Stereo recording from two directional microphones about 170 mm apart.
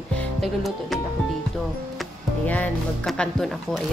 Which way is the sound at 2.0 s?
5° left (ahead or behind).